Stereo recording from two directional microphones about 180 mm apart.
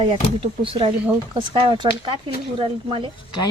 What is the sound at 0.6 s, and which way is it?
A woman's voice, 30° right (ahead or behind).